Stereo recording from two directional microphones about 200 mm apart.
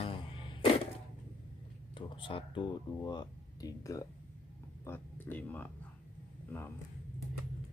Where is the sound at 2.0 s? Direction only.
25° left (ahead or behind); by 5.7 s 10° left (ahead or behind).